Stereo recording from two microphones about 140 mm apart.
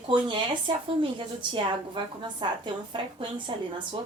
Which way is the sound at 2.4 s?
35° right (ahead or behind).